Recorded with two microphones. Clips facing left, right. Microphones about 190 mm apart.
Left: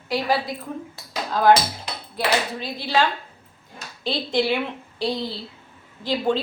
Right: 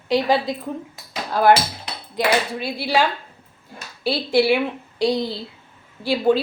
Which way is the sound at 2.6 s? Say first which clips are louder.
Right 2 dB; 10° right (ahead or behind).